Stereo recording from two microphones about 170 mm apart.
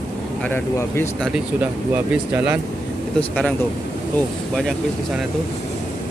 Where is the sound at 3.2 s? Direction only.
5° left (ahead or behind).